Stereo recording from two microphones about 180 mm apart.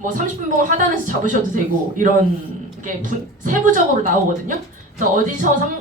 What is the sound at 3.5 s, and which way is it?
Speech, 45° right (ahead or behind).